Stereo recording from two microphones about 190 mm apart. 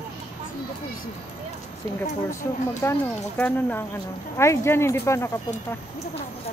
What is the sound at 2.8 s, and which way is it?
Speech, 10° left (ahead or behind).